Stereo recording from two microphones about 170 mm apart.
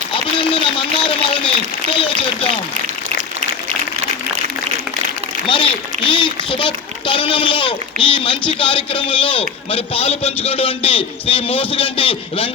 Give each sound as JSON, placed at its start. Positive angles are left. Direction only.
{"t": 0.1, "sound": "a sound", "side_deg": 30}
{"t": 2.0, "sound": "speech", "side_deg": 30}
{"t": 5.5, "sound": "speech", "side_deg": 30}